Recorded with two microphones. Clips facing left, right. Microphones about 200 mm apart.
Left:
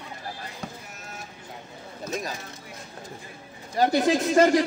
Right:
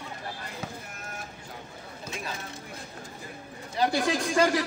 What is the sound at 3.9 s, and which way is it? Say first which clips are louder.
Speech: left 7 dB; 20° left (ahead or behind).